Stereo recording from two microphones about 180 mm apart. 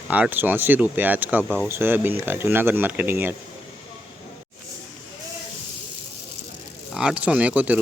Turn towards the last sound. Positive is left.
turn(degrees=-5)  # may be behind; listen again after turning